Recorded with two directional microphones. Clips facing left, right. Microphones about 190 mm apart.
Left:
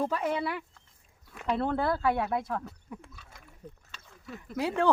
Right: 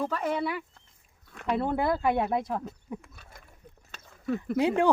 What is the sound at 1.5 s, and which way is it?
Speech, 15° right (ahead or behind).